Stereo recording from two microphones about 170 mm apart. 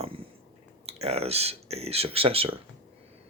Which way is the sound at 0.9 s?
35° right (ahead or behind).